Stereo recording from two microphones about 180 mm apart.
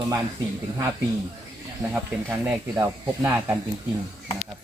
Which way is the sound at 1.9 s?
10° right (ahead or behind).